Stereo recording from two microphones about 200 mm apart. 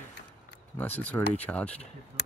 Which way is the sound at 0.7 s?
10° left (ahead or behind).